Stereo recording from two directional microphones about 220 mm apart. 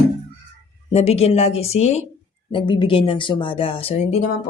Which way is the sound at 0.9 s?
30° left (ahead or behind).